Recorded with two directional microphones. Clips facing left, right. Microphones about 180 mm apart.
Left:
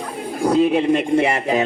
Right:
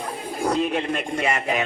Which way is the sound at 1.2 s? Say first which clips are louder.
Left 6 dB; 25° left (ahead or behind).